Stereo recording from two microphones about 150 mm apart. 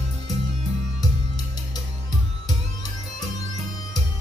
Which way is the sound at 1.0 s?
25° left (ahead or behind).